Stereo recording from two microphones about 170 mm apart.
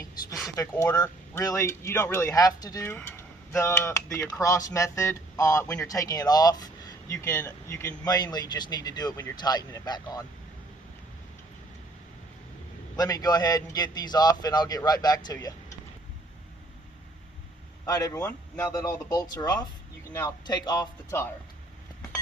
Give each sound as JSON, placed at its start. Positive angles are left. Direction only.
{"t": 0.7, "sound": "speech", "side_deg": 10}
{"t": 13.0, "sound": "speech", "side_deg": 20}
{"t": 17.8, "sound": "speech", "side_deg": 20}
{"t": 18.2, "sound": "speech", "side_deg": 10}